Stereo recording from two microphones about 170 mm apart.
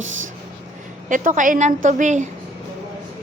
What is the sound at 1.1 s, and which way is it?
A woman's voice, 50° right (ahead or behind).